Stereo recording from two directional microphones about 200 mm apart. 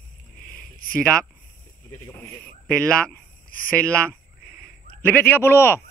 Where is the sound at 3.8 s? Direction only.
5° left (ahead or behind).